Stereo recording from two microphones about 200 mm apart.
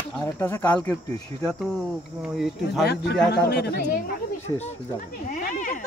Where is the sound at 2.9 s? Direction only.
55° left (ahead or behind).